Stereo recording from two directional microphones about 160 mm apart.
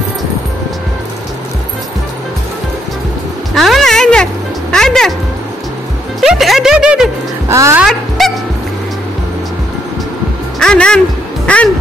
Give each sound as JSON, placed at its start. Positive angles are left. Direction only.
{"t": 3.5, "sound": "music", "side_deg": 0}
{"t": 6.2, "sound": "music", "side_deg": 0}
{"t": 7.4, "sound": "music", "side_deg": -15}
{"t": 8.2, "sound": "honk", "side_deg": 0}
{"t": 10.6, "sound": "speech", "side_deg": 5}
{"t": 11.4, "sound": "music", "side_deg": 10}